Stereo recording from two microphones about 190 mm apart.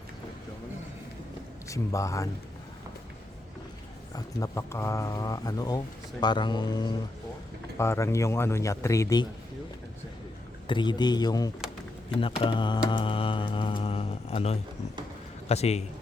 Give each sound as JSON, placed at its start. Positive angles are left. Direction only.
{"t": 1.6, "sound": "speech", "side_deg": 15}
{"t": 4.1, "sound": "speech", "side_deg": 20}
{"t": 10.7, "sound": "a man's voice", "side_deg": 25}